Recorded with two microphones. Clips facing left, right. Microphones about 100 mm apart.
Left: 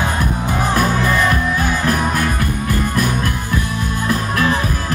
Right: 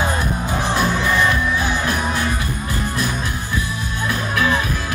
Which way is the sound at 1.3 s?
50° left (ahead or behind).